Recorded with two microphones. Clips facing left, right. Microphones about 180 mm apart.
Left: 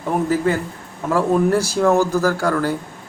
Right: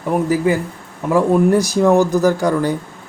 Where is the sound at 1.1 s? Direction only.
15° right (ahead or behind).